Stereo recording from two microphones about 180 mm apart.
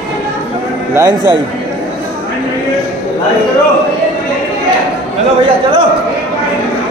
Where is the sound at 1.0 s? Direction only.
20° right (ahead or behind).